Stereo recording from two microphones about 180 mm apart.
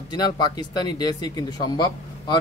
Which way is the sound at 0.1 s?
25° left (ahead or behind).